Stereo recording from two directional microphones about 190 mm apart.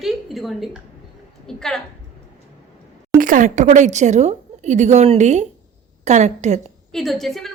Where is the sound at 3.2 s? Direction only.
45° right (ahead or behind).